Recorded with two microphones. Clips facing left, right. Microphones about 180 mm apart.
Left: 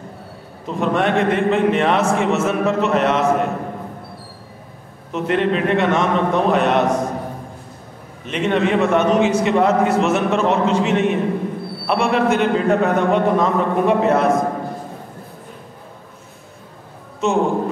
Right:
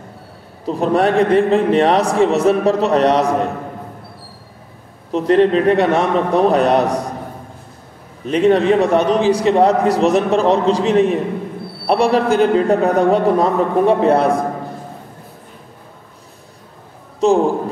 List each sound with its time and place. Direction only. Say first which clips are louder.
0.7 s a man's voice: right 4 dB; 35° right (ahead or behind)
5.1 s a man's voice: right 6 dB; 35° right (ahead or behind)
8.3 s a man's voice: right 6 dB; 35° right (ahead or behind)
17.2 s a man's voice: right 6 dB; 35° right (ahead or behind)